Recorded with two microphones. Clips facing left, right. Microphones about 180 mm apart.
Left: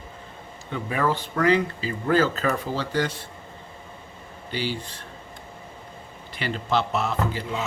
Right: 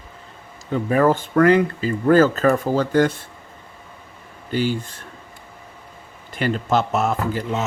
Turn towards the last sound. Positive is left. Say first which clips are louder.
# right 4 dB
turn(degrees=-45)  # may be behind; listen again after turning